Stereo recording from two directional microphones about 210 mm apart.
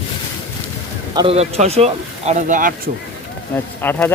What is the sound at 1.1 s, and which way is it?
Speech, 25° right (ahead or behind).